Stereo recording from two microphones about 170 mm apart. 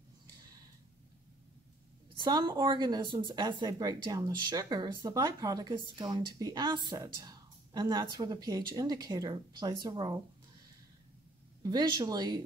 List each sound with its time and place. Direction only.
2.1 s a woman's voice: 25° right (ahead or behind)
11.6 s a woman's voice: 25° right (ahead or behind)